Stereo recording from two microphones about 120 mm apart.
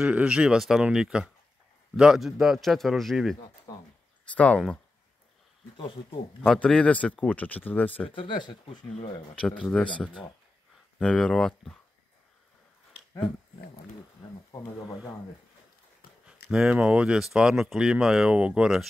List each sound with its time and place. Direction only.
0.0 s speech: 10° right (ahead or behind)
4.4 s speech: 10° left (ahead or behind)
6.4 s speech: 5° left (ahead or behind)
8.1 s speech: 45° left (ahead or behind)
9.3 s speech: 5° left (ahead or behind)
14.5 s speech: 30° left (ahead or behind)
16.3 s speech: 5° right (ahead or behind)